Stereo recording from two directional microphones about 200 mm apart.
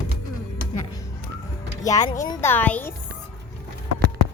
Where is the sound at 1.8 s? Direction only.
20° left (ahead or behind).